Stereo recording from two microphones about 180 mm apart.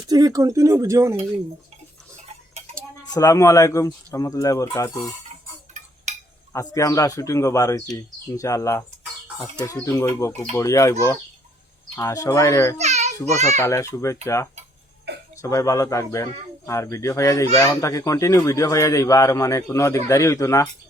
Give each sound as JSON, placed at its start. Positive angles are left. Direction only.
{"t": 0.1, "sound": "speech", "side_deg": -20}
{"t": 3.0, "sound": "speech", "side_deg": 20}
{"t": 6.1, "sound": "cutlery", "side_deg": -40}
{"t": 6.5, "sound": "speech", "side_deg": 15}
{"t": 12.8, "sound": "a sound", "side_deg": -40}
{"t": 13.5, "sound": "speech", "side_deg": 15}
{"t": 15.4, "sound": "speech", "side_deg": 20}